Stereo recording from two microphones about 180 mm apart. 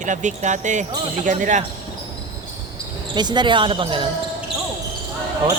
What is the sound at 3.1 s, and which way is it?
Speech, 25° right (ahead or behind).